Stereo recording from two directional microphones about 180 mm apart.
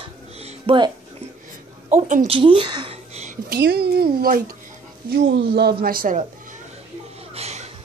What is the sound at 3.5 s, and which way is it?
Speech, 65° right (ahead or behind).